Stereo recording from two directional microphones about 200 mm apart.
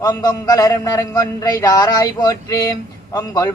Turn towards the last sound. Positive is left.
turn(degrees=20)  # may be behind; listen again after turning